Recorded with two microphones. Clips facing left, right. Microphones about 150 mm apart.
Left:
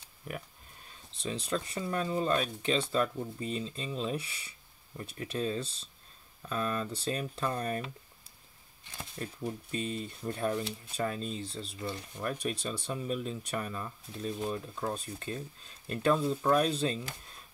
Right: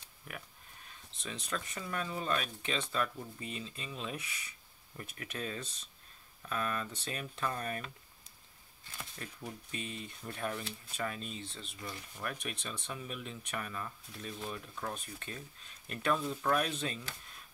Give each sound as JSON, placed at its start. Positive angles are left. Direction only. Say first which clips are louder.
{"t": 1.1, "sound": "speech", "louder": "left 7 dB", "side_deg": 35}
{"t": 8.8, "sound": "speech", "louder": "left 6 dB", "side_deg": 25}